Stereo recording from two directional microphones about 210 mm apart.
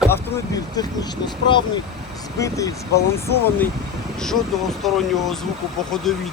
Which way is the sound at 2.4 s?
15° left (ahead or behind).